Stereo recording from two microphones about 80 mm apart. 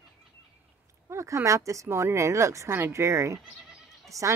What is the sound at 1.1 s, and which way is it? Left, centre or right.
A woman's voice, right.